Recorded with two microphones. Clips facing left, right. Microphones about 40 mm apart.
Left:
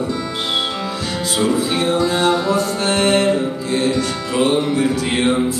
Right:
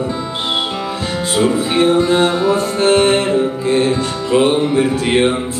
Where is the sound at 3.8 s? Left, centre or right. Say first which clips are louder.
Right 2 dB; right.